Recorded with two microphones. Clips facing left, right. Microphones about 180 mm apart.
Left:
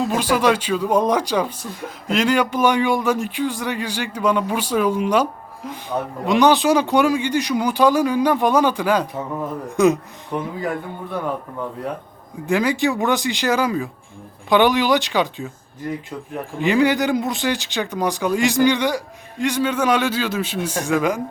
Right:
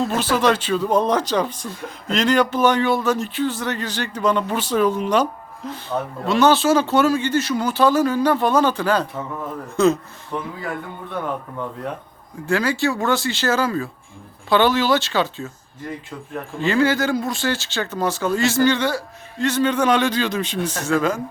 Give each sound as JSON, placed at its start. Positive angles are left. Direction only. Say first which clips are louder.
{"t": 0.0, "sound": "speech", "louder": "left 1 dB", "side_deg": 10}
{"t": 12.5, "sound": "speech", "louder": "left 1 dB", "side_deg": 15}
{"t": 16.6, "sound": "speech", "louder": "left 1 dB", "side_deg": 15}